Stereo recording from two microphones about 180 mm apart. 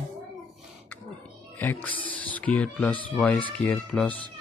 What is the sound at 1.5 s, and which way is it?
Speech, 10° left (ahead or behind).